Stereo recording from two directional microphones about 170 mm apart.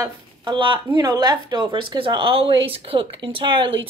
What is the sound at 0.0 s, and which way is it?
A woman's voice, 25° right (ahead or behind).